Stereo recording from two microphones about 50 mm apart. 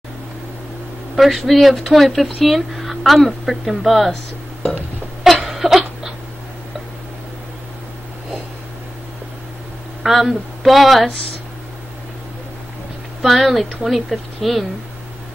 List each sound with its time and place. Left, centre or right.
1.1 s speech: centre
5.2 s a sound: centre
10.0 s speech: centre
13.2 s speech: centre